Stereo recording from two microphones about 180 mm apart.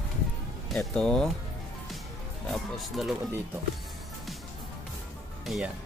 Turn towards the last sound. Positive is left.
turn(degrees=0)  # may be behind; listen again after turning